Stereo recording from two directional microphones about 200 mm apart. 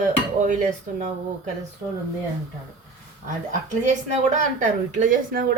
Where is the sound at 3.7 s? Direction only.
35° right (ahead or behind).